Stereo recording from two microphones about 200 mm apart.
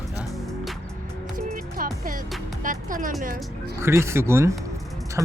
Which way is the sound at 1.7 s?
45° right (ahead or behind).